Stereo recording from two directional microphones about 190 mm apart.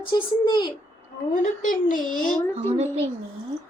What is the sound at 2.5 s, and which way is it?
Speech, 35° right (ahead or behind).